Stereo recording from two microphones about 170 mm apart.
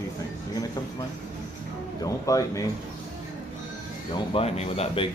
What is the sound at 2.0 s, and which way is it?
Speech, 20° left (ahead or behind).